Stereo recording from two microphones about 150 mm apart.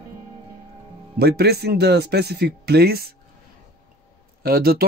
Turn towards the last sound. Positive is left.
turn(degrees=-90)